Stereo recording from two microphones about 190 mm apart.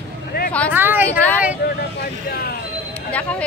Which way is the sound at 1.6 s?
55° left (ahead or behind).